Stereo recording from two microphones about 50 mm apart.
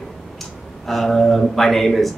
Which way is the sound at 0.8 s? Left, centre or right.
Centre.